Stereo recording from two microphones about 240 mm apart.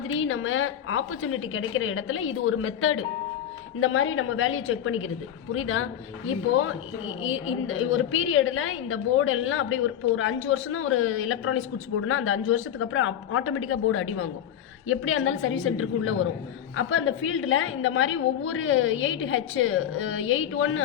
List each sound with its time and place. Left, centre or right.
0.1 s a woman's voice: left